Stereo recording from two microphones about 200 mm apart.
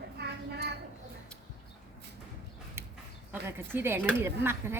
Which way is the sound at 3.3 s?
10° right (ahead or behind).